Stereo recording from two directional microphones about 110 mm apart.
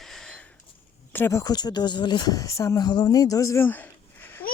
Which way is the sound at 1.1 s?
25° left (ahead or behind).